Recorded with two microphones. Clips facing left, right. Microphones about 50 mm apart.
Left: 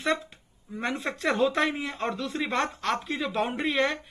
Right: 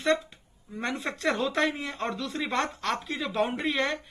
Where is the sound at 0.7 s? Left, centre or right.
Centre.